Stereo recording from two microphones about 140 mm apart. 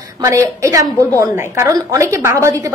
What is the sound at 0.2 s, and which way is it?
A woman's voice, 20° right (ahead or behind).